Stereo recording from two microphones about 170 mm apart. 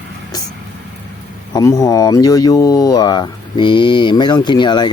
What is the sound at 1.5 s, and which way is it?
Speech, 20° left (ahead or behind).